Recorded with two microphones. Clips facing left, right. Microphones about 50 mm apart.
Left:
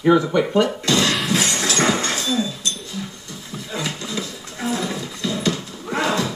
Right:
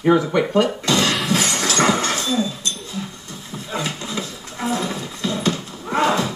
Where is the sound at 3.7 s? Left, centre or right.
Right.